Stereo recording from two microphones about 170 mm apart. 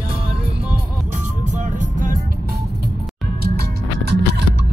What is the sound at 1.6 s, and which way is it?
Music, 50° right (ahead or behind).